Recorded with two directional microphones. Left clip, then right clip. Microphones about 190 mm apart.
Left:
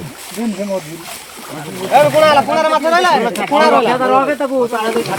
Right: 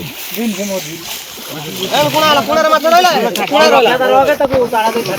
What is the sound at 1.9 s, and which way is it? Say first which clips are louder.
Speech: left 2 dB; 50° left (ahead or behind).